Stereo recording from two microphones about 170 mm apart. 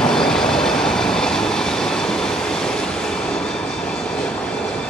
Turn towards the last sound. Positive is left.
turn(degrees=5)  # may be behind; listen again after turning